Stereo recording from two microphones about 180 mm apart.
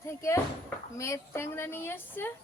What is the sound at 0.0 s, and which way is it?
A woman's voice, 15° left (ahead or behind).